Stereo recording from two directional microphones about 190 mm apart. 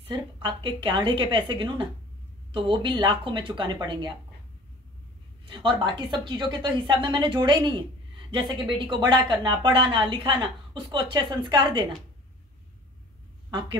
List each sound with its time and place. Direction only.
0.1 s speech: 25° right (ahead or behind)
5.5 s speech: 25° right (ahead or behind)
13.5 s a woman's voice: 25° right (ahead or behind)